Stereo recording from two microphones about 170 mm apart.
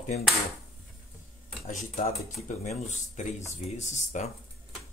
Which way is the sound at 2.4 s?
45° left (ahead or behind).